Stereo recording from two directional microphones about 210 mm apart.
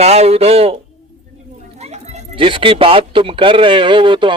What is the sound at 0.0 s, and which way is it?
Speech, 30° right (ahead or behind).